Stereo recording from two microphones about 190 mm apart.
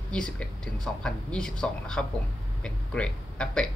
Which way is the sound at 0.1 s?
5° left (ahead or behind).